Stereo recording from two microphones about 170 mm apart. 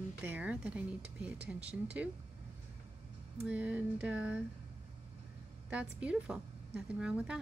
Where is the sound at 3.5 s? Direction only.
10° right (ahead or behind).